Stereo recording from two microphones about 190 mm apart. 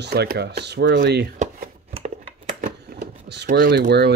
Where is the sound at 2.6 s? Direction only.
60° right (ahead or behind).